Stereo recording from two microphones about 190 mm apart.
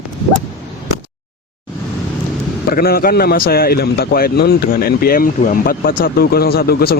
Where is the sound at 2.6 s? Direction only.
55° left (ahead or behind).